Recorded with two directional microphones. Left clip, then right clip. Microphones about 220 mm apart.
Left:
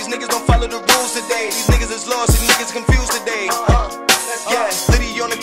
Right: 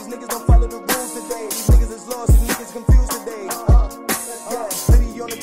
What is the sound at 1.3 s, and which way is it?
Music, 10° left (ahead or behind).